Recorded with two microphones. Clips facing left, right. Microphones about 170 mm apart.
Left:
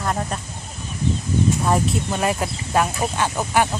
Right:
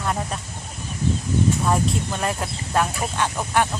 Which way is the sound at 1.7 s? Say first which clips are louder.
Left 2 dB; 5° left (ahead or behind).